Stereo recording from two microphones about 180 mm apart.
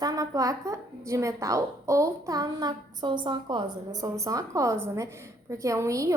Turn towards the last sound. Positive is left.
turn(degrees=-15)  # may be behind; listen again after turning